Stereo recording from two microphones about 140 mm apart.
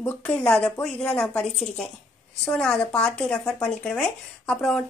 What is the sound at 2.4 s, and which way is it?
Speech, 5° left (ahead or behind).